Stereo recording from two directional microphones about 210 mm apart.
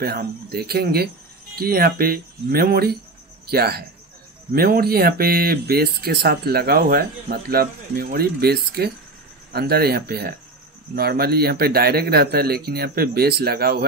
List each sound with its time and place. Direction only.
0.0 s speech: 45° right (ahead or behind)